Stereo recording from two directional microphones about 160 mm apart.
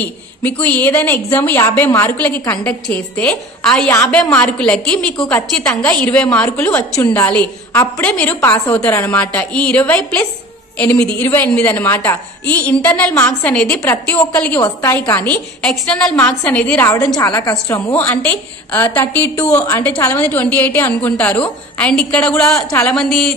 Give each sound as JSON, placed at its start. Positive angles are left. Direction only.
{"t": 0.4, "sound": "a woman's voice", "side_deg": 10}
{"t": 14.6, "sound": "a woman's voice", "side_deg": 20}
{"t": 19.5, "sound": "a woman's voice", "side_deg": 20}
{"t": 22.6, "sound": "a woman's voice", "side_deg": 20}
{"t": 22.8, "sound": "a woman's voice", "side_deg": 5}